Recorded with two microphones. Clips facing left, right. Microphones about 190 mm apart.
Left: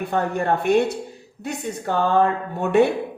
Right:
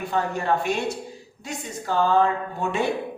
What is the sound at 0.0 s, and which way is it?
A man's voice, 55° left (ahead or behind).